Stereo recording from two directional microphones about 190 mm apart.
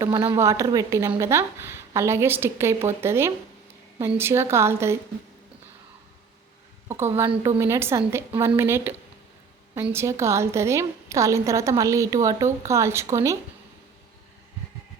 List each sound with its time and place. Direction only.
0.0 s a woman's voice: 25° right (ahead or behind)
6.8 s a woman's voice: 10° right (ahead or behind)